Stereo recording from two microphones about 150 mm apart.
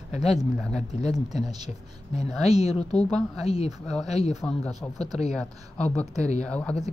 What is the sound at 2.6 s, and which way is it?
Speech, 45° left (ahead or behind).